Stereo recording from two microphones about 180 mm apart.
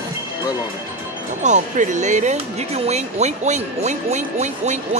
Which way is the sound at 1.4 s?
40° right (ahead or behind).